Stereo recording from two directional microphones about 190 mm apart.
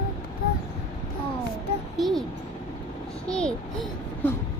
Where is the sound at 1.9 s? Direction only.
Centre (ahead or behind).